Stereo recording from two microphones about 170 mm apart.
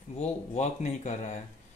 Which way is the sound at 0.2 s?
40° left (ahead or behind).